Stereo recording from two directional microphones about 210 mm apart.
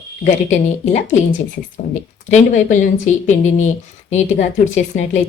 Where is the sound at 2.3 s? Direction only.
35° left (ahead or behind).